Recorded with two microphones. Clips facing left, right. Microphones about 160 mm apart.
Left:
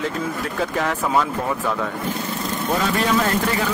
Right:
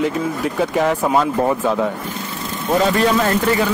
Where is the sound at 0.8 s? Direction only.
20° right (ahead or behind).